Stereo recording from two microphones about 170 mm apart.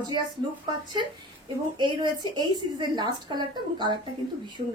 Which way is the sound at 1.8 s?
25° right (ahead or behind).